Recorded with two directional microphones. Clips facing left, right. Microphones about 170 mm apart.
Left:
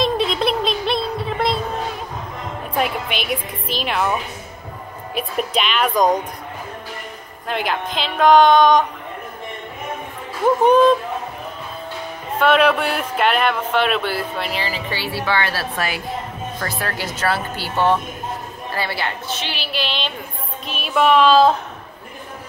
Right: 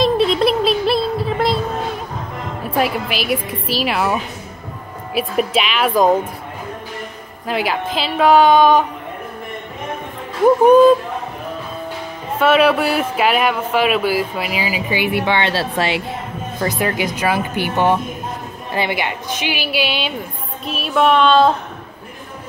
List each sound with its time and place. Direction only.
0.0 s a sound: centre (ahead or behind)
2.7 s a woman's voice: 5° right (ahead or behind)
7.4 s a woman's voice: 5° right (ahead or behind)
10.4 s speech: 10° right (ahead or behind)
12.4 s a woman's voice: 5° right (ahead or behind)